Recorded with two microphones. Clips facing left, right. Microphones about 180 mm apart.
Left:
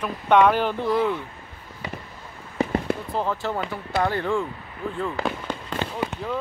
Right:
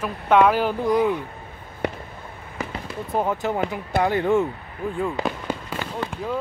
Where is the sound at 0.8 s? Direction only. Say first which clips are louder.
Right 4 dB; 15° right (ahead or behind).